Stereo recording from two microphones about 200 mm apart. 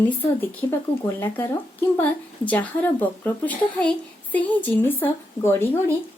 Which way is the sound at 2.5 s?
10° left (ahead or behind).